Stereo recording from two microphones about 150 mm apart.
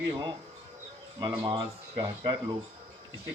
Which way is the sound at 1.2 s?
30° right (ahead or behind).